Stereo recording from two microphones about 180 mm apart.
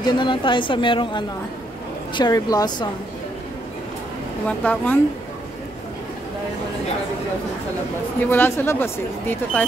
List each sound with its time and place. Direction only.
0.0 s a woman's voice: 25° left (ahead or behind)
4.5 s speech: 10° left (ahead or behind)
8.3 s speech: 10° left (ahead or behind)